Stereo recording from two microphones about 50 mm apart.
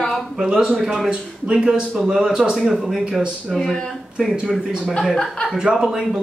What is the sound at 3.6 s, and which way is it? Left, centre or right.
Speech, centre.